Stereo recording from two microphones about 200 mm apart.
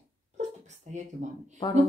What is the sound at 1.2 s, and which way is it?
Speech, 35° right (ahead or behind).